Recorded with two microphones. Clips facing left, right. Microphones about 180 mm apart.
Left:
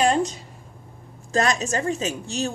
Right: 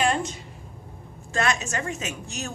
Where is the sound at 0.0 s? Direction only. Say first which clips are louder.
Left 4 dB; 35° left (ahead or behind).